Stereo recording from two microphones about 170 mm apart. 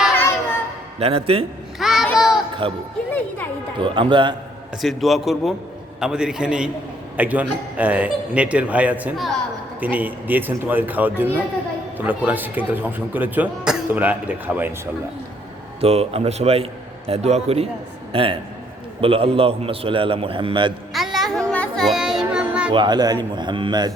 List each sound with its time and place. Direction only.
0.2 s a sound: 15° left (ahead or behind)
0.9 s a man's voice: 35° right (ahead or behind)
1.8 s babbling: centre (ahead or behind)
2.1 s a sound: centre (ahead or behind)
2.6 s a man's voice: 30° right (ahead or behind)
3.1 s speech: 10° left (ahead or behind)
3.8 s speech: 30° right (ahead or behind)
4.8 s a man's voice: centre (ahead or behind)
15.8 s a man's voice: 35° right (ahead or behind)
20.9 s music: centre (ahead or behind)
21.5 s children playing: 5° left (ahead or behind)
22.7 s speech: 25° right (ahead or behind)